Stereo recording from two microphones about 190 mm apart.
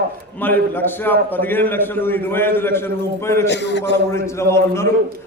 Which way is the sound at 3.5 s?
65° left (ahead or behind).